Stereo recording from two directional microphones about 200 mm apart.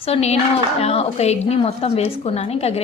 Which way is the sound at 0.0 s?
30° left (ahead or behind).